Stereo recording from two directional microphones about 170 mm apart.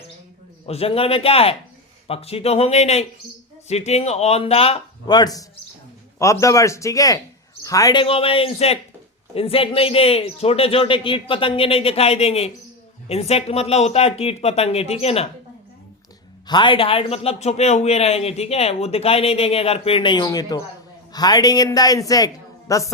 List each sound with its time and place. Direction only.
0.6 s speech: 35° left (ahead or behind)
5.0 s speech: 25° left (ahead or behind)
8.0 s speech: 35° left (ahead or behind)
16.5 s speech: 30° left (ahead or behind)